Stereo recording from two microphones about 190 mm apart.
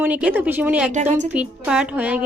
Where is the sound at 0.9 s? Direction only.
40° right (ahead or behind).